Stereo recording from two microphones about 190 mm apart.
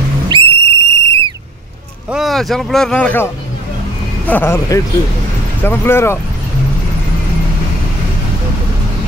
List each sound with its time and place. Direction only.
0.3 s whistle: 25° right (ahead or behind)
0.8 s a sound: 15° left (ahead or behind)
2.0 s speech: centre (ahead or behind)
4.3 s speech: 10° left (ahead or behind)